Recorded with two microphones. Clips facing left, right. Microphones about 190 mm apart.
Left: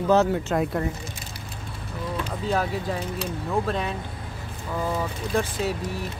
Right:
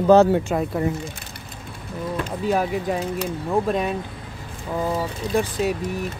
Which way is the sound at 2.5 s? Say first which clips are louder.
Right 4 dB; 15° right (ahead or behind).